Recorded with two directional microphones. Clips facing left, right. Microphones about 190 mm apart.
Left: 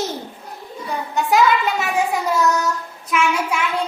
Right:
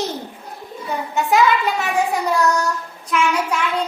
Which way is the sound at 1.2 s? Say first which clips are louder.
Even; centre (ahead or behind).